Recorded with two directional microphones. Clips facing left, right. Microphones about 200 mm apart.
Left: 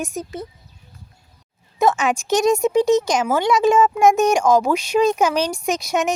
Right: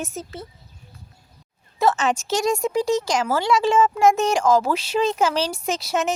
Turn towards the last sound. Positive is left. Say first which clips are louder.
# left 3 dB
turn(degrees=15)  # may be behind; listen again after turning